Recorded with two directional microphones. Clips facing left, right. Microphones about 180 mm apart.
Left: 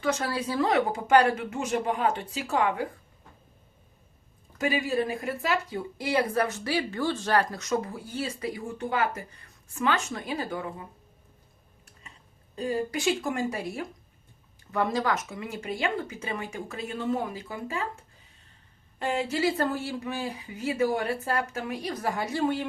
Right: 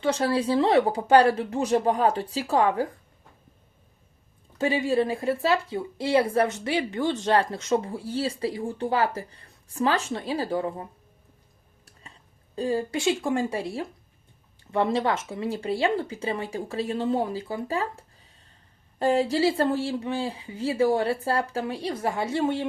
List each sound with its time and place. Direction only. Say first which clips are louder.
0.0 s speech: right 5 dB; 30° right (ahead or behind)
4.5 s speech: right 4 dB; 30° right (ahead or behind)
12.5 s speech: right 3 dB; 30° right (ahead or behind)